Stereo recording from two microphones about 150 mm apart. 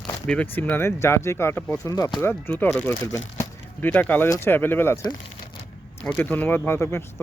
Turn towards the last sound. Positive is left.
turn(degrees=15)  # may be behind; listen again after turning